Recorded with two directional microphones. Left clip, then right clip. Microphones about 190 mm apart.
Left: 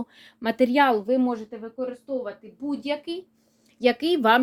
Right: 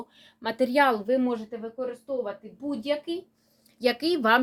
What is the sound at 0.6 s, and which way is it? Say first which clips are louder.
Speech: left 2 dB; 40° left (ahead or behind).